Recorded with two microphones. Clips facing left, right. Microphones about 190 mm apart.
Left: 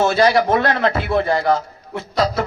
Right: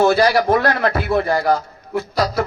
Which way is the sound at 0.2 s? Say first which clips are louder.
Even; 25° left (ahead or behind).